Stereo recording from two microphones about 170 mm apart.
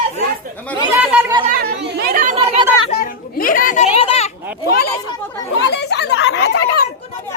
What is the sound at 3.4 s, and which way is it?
Speech, 55° left (ahead or behind).